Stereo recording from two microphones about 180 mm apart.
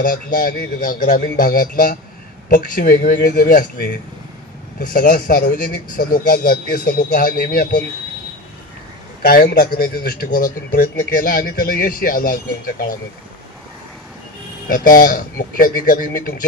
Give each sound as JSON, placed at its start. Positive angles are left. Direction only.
{"t": 0.0, "sound": "a man's voice", "side_deg": 50}
{"t": 4.7, "sound": "a man's voice", "side_deg": 50}
{"t": 9.2, "sound": "a man's voice", "side_deg": 60}
{"t": 14.7, "sound": "a man's voice", "side_deg": 50}